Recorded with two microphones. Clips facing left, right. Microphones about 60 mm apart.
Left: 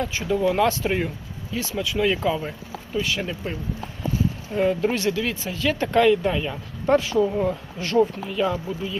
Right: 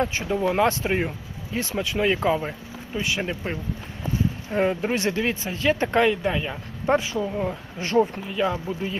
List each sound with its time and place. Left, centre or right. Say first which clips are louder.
0.0 s speech: left 1 dB; right
2.5 s speech: left 2 dB; centre
6.1 s speech: left 4 dB; centre
7.1 s speech: left 5 dB; centre
7.8 s speech: even; right
8.3 s speech: left 1 dB; centre